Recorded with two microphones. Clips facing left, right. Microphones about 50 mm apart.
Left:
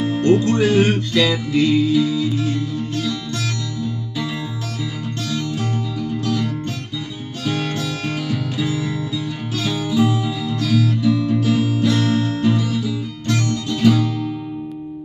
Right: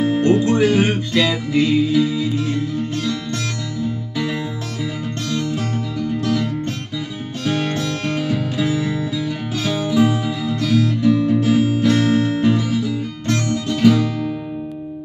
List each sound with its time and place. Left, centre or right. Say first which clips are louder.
0.0 s music: even; centre
7.6 s music: right 2 dB; centre
8.6 s music: right 3 dB; right
9.1 s music: right 2 dB; centre
9.9 s music: right 1 dB; centre
11.1 s music: right 4 dB; right
13.8 s guitar: right 2 dB; centre